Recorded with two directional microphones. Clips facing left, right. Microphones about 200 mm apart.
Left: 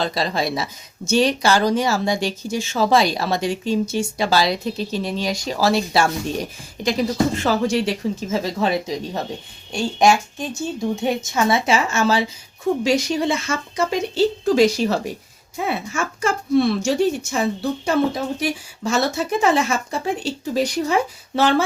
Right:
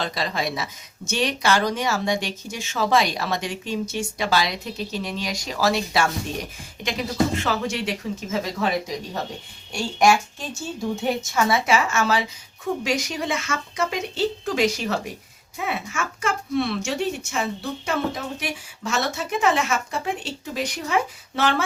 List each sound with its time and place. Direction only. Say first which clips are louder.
0.0 s speech: left 4 dB; 35° left (ahead or behind)